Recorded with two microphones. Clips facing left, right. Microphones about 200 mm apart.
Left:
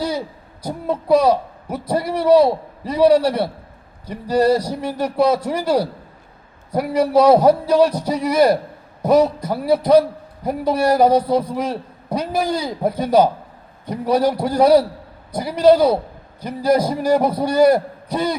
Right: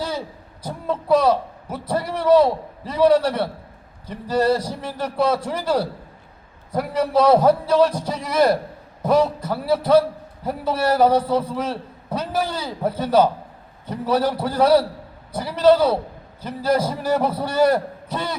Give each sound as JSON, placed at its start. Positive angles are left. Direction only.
{"t": 0.6, "sound": "a man's voice", "side_deg": 10}